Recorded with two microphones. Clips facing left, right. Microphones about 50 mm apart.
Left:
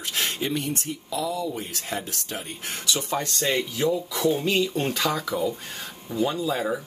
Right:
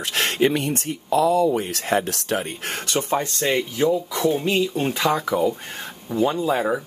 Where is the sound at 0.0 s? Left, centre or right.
Right.